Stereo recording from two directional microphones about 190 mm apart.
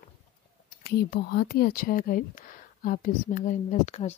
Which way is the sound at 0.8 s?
50° left (ahead or behind).